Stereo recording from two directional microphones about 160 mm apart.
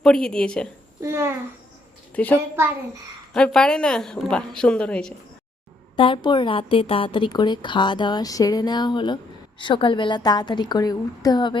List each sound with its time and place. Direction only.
0.0 s a woman's voice: 5° left (ahead or behind)
1.0 s a child's voice: 15° right (ahead or behind)
2.2 s a woman's voice: 10° left (ahead or behind)
3.3 s a woman's voice: 5° left (ahead or behind)
6.0 s a woman's voice: 30° left (ahead or behind)